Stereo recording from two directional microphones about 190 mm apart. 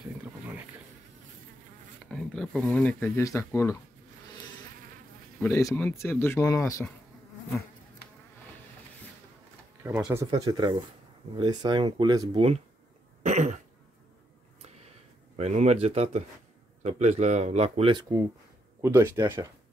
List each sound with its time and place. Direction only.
0.2 s a sound: 10° right (ahead or behind)
2.0 s speech: 5° left (ahead or behind)
5.4 s speech: 15° left (ahead or behind)
9.8 s speech: 15° right (ahead or behind)
13.2 s cough: 40° right (ahead or behind)
15.3 s speech: 35° right (ahead or behind)
18.8 s speech: 15° right (ahead or behind)